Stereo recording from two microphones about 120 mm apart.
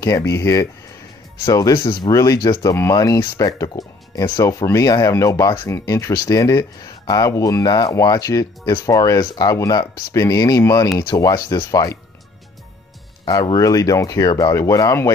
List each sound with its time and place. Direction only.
0.0 s speech: 25° left (ahead or behind)
13.3 s speech: 30° left (ahead or behind)